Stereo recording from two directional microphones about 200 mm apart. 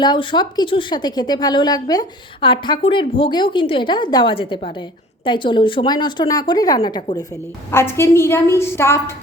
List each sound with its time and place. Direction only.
0.0 s a woman's voice: 25° left (ahead or behind)